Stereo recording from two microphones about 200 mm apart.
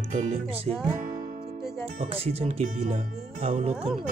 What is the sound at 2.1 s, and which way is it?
Speech, 30° right (ahead or behind).